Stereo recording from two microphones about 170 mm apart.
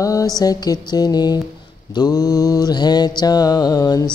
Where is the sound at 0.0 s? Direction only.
20° left (ahead or behind).